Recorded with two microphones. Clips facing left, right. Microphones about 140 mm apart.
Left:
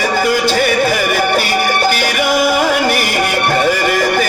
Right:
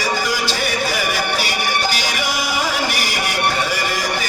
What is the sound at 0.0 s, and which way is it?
Music, 55° left (ahead or behind).